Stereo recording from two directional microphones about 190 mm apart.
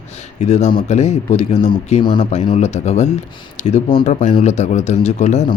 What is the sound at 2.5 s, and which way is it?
Speech, 35° left (ahead or behind).